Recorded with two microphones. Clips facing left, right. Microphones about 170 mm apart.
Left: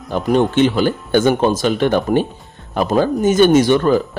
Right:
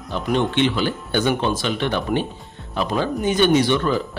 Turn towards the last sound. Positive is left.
turn(degrees=45)  # may be behind; listen again after turning